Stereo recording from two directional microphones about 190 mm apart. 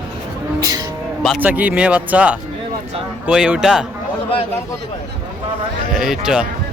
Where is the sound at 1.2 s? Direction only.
5° right (ahead or behind).